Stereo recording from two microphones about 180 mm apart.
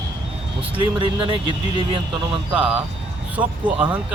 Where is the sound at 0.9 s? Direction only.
30° right (ahead or behind).